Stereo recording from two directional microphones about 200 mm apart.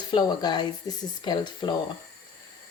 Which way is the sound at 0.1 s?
20° left (ahead or behind).